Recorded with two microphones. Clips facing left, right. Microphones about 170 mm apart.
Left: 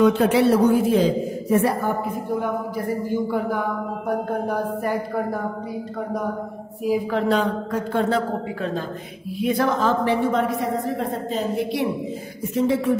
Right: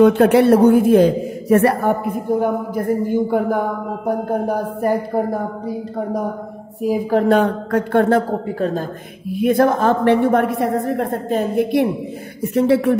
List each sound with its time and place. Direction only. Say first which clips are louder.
0.0 s a woman's voice: right 5 dB; 55° right (ahead or behind)
2.3 s a woman's voice: right 6 dB; 50° right (ahead or behind)
4.5 s speech: right 5 dB; 40° right (ahead or behind)
6.8 s a woman's voice: right 5 dB; 45° right (ahead or behind); by 8.2 s 60° right (ahead or behind)
8.3 s speech: right 5 dB; 40° right (ahead or behind)
9.4 s a woman's voice: right 6 dB; 50° right (ahead or behind)
12.5 s a woman's voice: right 5 dB; 65° right (ahead or behind)